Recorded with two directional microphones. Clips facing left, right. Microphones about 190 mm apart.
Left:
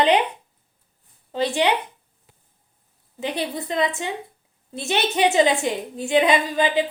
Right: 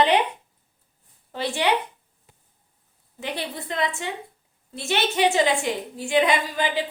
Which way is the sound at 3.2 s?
20° left (ahead or behind).